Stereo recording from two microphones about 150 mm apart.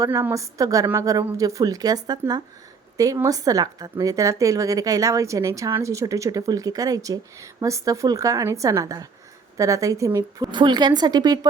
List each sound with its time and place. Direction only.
0.0 s speech: 20° right (ahead or behind)